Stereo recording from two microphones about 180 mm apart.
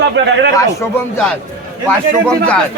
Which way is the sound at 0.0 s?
70° right (ahead or behind).